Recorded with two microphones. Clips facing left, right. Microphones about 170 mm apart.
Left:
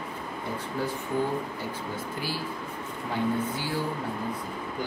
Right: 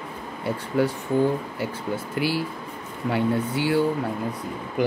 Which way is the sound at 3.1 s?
70° right (ahead or behind).